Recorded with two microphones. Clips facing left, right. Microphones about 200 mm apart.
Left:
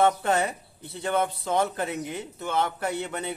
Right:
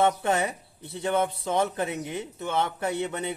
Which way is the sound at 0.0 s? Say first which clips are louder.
Left 1 dB; 15° right (ahead or behind).